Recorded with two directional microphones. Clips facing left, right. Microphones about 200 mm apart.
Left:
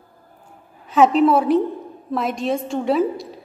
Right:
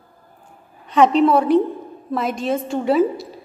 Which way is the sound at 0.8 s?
5° left (ahead or behind).